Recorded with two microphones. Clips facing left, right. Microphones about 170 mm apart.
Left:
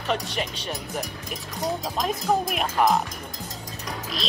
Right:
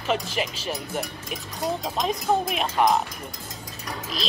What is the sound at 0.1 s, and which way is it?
Speech, centre (ahead or behind).